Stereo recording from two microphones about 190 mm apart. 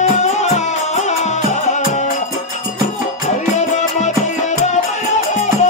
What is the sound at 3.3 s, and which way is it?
Music, 40° left (ahead or behind).